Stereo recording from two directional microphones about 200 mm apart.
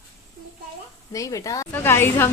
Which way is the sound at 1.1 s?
15° left (ahead or behind).